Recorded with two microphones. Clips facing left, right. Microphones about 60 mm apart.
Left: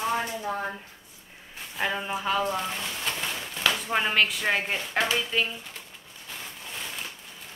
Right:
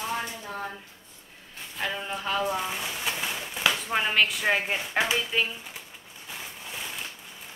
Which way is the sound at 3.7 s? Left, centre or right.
Centre.